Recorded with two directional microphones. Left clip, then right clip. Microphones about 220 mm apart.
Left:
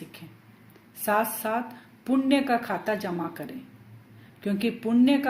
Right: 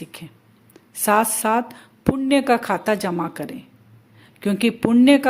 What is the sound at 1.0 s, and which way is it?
Speech, 45° right (ahead or behind).